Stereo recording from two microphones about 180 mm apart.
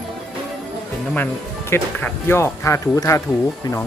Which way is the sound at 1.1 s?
10° left (ahead or behind).